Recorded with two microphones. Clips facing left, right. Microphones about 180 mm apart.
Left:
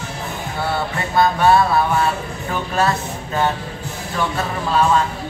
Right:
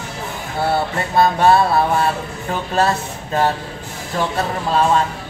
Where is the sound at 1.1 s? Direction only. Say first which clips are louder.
Right 1 dB; 30° right (ahead or behind).